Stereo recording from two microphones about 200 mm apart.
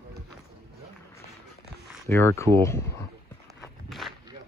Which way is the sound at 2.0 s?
10° left (ahead or behind).